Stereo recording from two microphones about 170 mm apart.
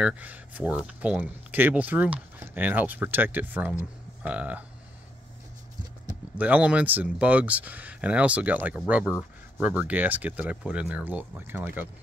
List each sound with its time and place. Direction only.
0.0 s speech: 10° right (ahead or behind)
6.3 s speech: 10° right (ahead or behind)